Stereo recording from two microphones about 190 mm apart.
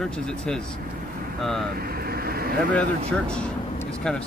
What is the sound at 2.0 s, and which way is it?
Vehicle, 55° right (ahead or behind).